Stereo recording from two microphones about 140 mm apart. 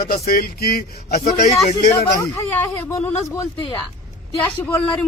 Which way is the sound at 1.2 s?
50° left (ahead or behind).